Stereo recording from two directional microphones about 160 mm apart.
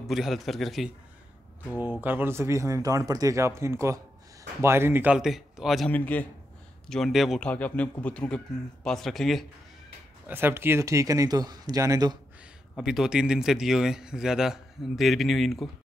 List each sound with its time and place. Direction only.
0.0 s speech: centre (ahead or behind)
1.8 s speech: 10° right (ahead or behind)
5.9 s a man's voice: 10° left (ahead or behind)
10.2 s speech: 15° right (ahead or behind)
12.7 s speech: 5° right (ahead or behind)